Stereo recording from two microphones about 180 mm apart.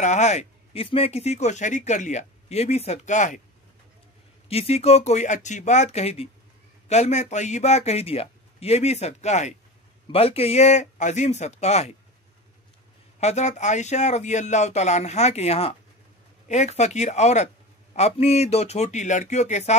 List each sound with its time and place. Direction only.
0.0 s speech: 40° left (ahead or behind)
4.5 s speech: 35° left (ahead or behind)
13.2 s speech: 40° left (ahead or behind)